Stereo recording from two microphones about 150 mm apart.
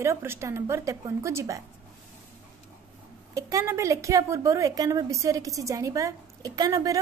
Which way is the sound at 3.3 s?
20° right (ahead or behind).